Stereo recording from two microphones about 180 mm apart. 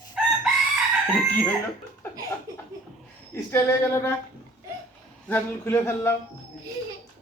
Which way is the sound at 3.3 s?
15° left (ahead or behind).